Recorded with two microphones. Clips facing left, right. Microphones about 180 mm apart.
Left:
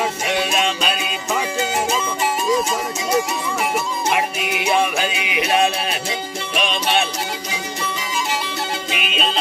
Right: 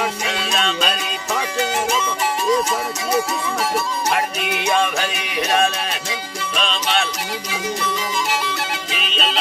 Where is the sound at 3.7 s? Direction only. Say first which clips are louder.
Even; 10° left (ahead or behind).